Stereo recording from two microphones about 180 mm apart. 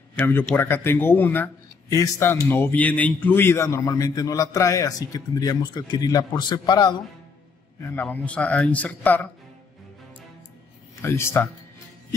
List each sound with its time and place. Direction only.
0.1 s a man's voice: 10° left (ahead or behind)
7.9 s a man's voice: 10° left (ahead or behind)
11.0 s a man's voice: 15° left (ahead or behind)